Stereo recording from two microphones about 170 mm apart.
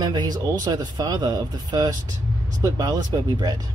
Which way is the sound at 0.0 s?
25° right (ahead or behind).